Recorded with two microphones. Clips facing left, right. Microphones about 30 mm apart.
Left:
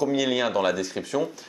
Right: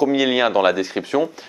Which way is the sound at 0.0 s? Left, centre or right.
Right.